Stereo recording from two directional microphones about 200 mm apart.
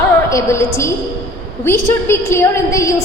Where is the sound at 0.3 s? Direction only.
15° left (ahead or behind).